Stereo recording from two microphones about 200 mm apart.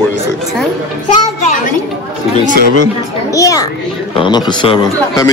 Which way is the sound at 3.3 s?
15° left (ahead or behind).